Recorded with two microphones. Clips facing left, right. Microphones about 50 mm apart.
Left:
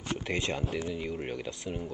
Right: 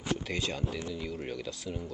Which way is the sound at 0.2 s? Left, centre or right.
Left.